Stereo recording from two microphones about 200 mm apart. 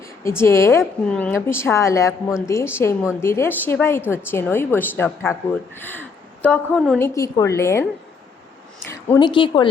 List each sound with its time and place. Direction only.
0.3 s a woman's voice: 15° left (ahead or behind)
6.4 s a woman's voice: 5° left (ahead or behind)
7.1 s a woman's voice: 15° left (ahead or behind)
9.2 s speech: 25° left (ahead or behind)